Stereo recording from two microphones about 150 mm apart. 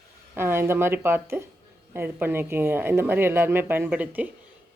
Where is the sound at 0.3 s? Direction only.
15° right (ahead or behind).